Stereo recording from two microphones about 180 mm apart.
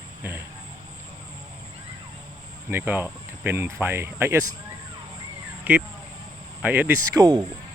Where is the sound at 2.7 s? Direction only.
10° right (ahead or behind).